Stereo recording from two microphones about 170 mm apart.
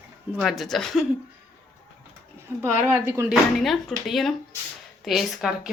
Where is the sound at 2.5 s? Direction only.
15° right (ahead or behind).